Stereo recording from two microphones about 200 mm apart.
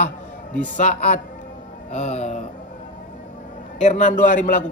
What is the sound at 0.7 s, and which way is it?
A man's voice, 35° left (ahead or behind).